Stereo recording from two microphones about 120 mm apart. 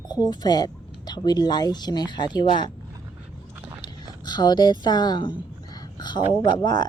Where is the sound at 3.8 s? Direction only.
35° left (ahead or behind).